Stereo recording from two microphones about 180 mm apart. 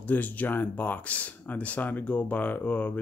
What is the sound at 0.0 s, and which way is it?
Speech, 10° left (ahead or behind).